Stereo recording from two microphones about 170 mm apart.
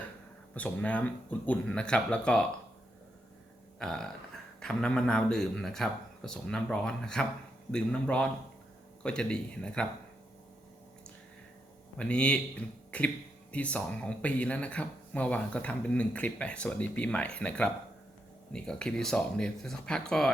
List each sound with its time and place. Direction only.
0.5 s speech: 10° left (ahead or behind)
3.8 s speech: 5° left (ahead or behind)
11.9 s speech: 5° left (ahead or behind)